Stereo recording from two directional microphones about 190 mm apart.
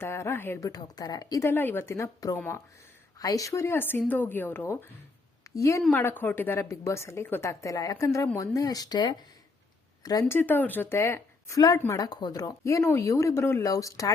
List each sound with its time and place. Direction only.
0.0 s speech: 15° left (ahead or behind)